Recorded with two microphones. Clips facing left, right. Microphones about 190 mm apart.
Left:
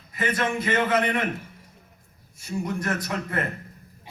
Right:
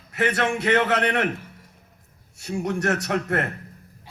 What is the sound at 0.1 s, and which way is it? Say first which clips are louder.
A man's voice: right 3 dB; 70° right (ahead or behind).